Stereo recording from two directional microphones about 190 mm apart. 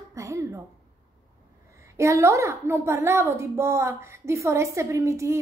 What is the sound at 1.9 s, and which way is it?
A woman's voice, 15° right (ahead or behind).